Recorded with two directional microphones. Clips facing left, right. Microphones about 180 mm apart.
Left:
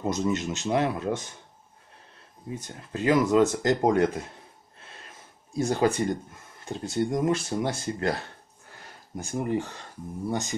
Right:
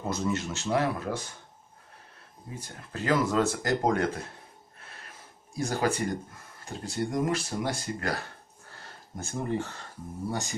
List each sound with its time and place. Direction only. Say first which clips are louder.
0.0 s speech: left 3 dB; 20° left (ahead or behind)
2.5 s speech: left 5 dB; 20° left (ahead or behind)
4.7 s gasp: left 2 dB; 25° left (ahead or behind)
5.6 s speech: left 4 dB; 20° left (ahead or behind)